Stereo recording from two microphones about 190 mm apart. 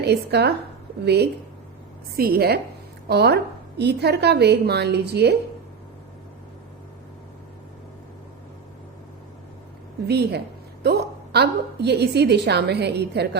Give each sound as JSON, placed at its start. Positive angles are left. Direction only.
{"t": 0.0, "sound": "a woman's voice", "side_deg": -60}
{"t": 10.1, "sound": "a woman's voice", "side_deg": -60}